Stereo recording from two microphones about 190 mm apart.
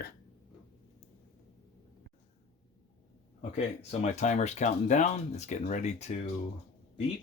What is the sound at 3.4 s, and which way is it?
Speech, 35° left (ahead or behind).